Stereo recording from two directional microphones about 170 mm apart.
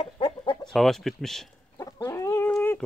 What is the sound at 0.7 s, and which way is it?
Speech, centre (ahead or behind).